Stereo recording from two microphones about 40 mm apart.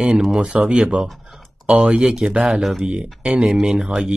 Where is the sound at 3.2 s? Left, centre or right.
Right.